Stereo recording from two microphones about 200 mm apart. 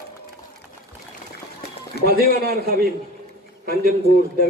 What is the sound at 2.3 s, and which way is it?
Speech, 45° right (ahead or behind).